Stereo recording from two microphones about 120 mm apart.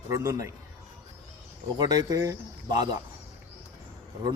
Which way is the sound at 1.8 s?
30° right (ahead or behind).